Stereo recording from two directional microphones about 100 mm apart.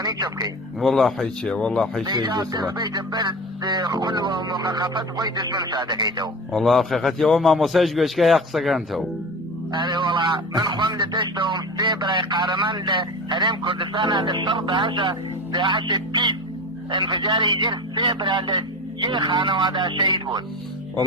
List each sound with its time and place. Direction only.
0.0 s a man's voice: 40° right (ahead or behind)
0.8 s a man's voice: centre (ahead or behind)
2.0 s speech: 45° right (ahead or behind)
6.5 s a man's voice: centre (ahead or behind)
9.7 s speech: 45° right (ahead or behind)